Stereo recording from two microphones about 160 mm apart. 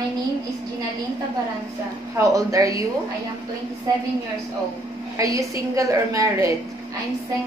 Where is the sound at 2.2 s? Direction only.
20° right (ahead or behind).